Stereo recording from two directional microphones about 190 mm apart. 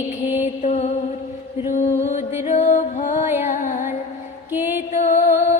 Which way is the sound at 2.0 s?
40° left (ahead or behind).